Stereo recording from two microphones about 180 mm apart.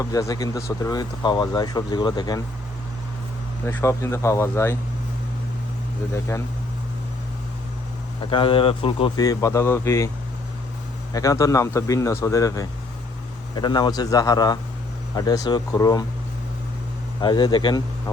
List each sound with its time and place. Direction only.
0.0 s speech: 20° left (ahead or behind)
3.7 s speech: 15° left (ahead or behind)
6.3 s speech: 15° left (ahead or behind)
8.2 s speech: 30° left (ahead or behind)
11.1 s speech: 20° left (ahead or behind)
17.2 s speech: 25° left (ahead or behind)